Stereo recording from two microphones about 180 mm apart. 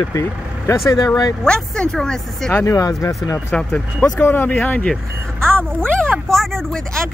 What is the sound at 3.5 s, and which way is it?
Speech, 5° left (ahead or behind).